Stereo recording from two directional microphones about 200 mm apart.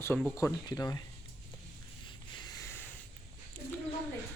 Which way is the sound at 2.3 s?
20° left (ahead or behind).